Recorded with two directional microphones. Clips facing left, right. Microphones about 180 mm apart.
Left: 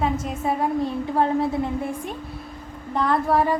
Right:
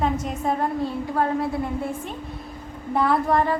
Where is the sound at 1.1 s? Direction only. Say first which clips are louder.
Left 3 dB; 25° left (ahead or behind).